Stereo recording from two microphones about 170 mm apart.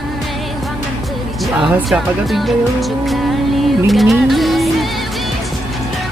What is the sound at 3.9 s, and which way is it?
Music, centre (ahead or behind).